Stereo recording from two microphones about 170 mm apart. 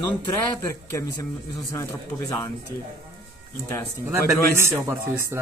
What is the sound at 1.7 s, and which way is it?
Speech, 20° left (ahead or behind).